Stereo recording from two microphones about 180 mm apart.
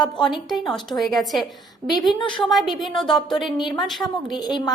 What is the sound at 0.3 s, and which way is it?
A woman's voice, centre (ahead or behind).